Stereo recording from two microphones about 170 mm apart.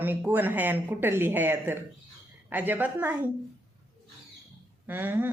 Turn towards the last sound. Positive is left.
turn(degrees=-10)  # may be behind; listen again after turning